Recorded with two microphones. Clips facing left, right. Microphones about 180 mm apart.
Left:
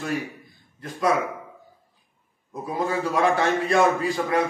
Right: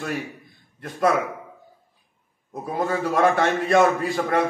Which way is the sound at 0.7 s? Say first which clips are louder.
Right 1 dB; 55° right (ahead or behind).